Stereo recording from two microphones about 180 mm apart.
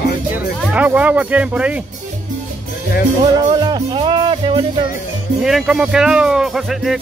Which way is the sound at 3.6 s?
25° right (ahead or behind).